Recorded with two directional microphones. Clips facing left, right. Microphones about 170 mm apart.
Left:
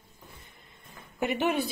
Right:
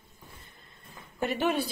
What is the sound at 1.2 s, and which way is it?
Speech, 15° left (ahead or behind).